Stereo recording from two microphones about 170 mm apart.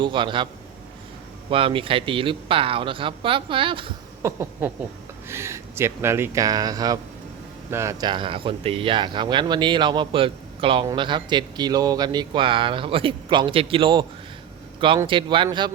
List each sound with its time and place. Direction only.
0.0 s speech: 30° right (ahead or behind)
1.5 s speech: 30° right (ahead or behind)
4.2 s speech: 15° right (ahead or behind)